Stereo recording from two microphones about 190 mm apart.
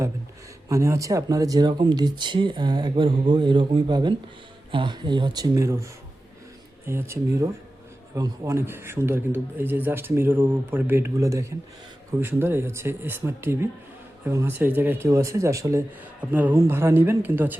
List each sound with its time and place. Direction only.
0.7 s a man's voice: 15° right (ahead or behind)